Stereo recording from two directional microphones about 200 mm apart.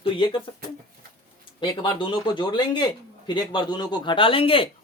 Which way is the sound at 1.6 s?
25° left (ahead or behind).